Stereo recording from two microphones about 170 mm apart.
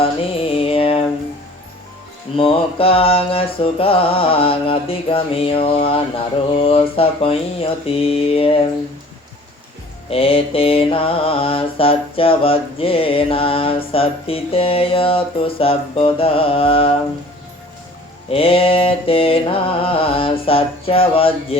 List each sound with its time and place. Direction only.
0.0 s music: 35° left (ahead or behind)
2.3 s mantra: 30° left (ahead or behind)
10.1 s mantra: 35° left (ahead or behind)
18.3 s mantra: 35° left (ahead or behind)